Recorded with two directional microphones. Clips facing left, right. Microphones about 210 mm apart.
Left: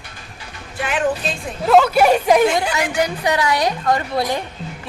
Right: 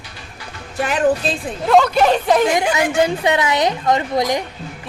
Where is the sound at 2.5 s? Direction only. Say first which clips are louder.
Right 3 dB; 20° right (ahead or behind).